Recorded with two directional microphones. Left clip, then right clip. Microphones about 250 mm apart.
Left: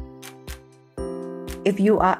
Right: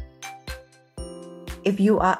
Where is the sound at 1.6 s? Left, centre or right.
Left.